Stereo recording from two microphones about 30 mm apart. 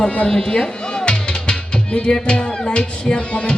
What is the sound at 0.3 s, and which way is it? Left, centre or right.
Music, left.